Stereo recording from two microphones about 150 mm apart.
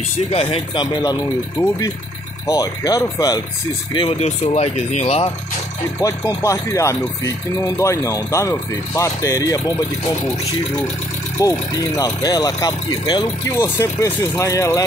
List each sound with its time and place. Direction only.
0.3 s speech: 40° left (ahead or behind)
4.2 s speech: 45° left (ahead or behind)
5.9 s speech: 25° left (ahead or behind)
11.4 s speech: 20° left (ahead or behind)